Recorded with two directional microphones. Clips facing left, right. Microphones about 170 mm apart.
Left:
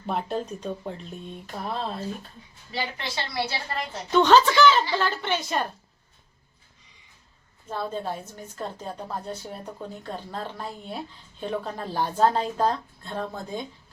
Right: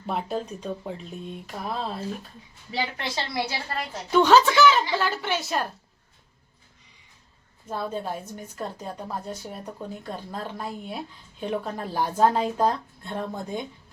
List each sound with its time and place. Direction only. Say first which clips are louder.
0.0 s speech: even; centre (ahead or behind)
3.3 s a woman's voice: left 2 dB; 5° right (ahead or behind)
7.7 s a woman's voice: even; 10° right (ahead or behind)